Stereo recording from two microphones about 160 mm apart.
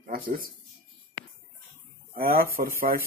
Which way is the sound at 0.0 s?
60° right (ahead or behind).